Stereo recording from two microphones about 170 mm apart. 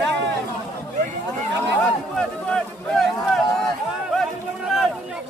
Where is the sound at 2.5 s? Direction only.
Centre (ahead or behind).